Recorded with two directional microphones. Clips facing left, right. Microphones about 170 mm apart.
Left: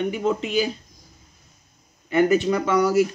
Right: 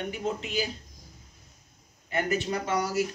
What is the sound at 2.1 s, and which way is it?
Speech, 90° left.